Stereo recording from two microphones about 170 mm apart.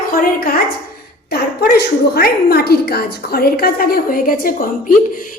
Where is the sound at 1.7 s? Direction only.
65° left (ahead or behind).